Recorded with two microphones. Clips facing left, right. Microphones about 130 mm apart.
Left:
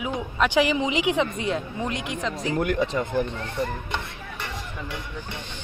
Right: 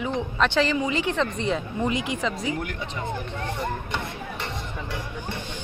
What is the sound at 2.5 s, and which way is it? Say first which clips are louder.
Speech: left 6 dB; 45° left (ahead or behind).